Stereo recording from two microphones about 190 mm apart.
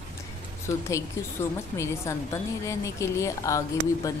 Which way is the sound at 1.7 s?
15° left (ahead or behind).